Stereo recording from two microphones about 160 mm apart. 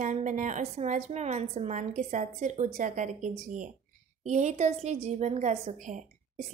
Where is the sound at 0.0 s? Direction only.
50° right (ahead or behind).